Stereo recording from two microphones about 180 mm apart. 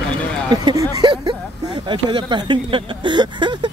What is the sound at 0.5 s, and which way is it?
Speech, 20° right (ahead or behind).